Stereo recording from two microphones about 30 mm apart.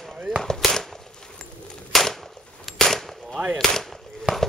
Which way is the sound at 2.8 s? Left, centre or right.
Centre.